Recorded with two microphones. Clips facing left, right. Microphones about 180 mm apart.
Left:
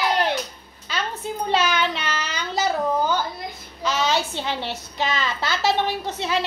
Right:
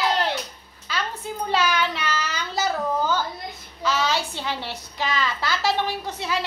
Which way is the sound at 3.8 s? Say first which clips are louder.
Left 1 dB; 20° left (ahead or behind).